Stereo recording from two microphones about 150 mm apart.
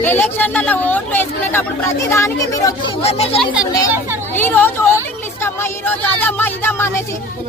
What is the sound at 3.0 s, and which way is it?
Speech, 40° left (ahead or behind).